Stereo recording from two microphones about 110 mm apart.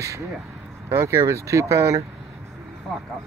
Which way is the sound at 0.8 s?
25° right (ahead or behind).